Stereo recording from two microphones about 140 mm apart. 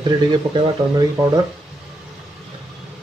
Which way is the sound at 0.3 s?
30° right (ahead or behind).